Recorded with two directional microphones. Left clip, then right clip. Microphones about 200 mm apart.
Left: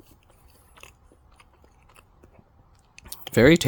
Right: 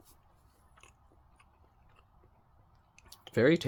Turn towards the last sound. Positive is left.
turn(degrees=45)  # may be behind; listen again after turning